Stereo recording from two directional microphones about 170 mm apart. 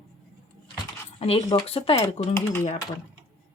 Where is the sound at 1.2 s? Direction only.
35° left (ahead or behind).